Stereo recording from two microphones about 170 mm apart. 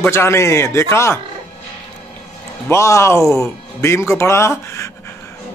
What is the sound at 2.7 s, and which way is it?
Speech, 15° left (ahead or behind).